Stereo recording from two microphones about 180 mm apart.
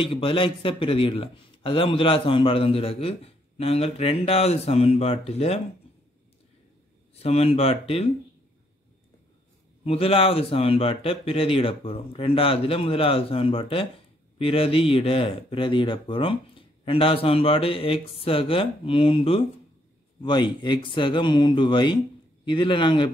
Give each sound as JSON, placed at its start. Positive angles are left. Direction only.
{"t": 0.0, "sound": "a man's voice", "side_deg": 30}
{"t": 7.2, "sound": "a man's voice", "side_deg": 35}
{"t": 9.8, "sound": "a man's voice", "side_deg": 30}